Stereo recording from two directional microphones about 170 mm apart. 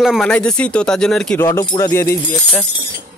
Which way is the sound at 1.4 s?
15° left (ahead or behind).